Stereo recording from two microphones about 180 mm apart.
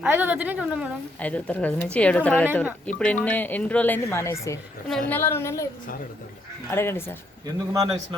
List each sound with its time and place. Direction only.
0.0 s a woman's voice: 10° right (ahead or behind)
1.2 s a woman's voice: 10° left (ahead or behind)
6.7 s a woman's voice: 15° left (ahead or behind)
7.4 s speech: 20° right (ahead or behind)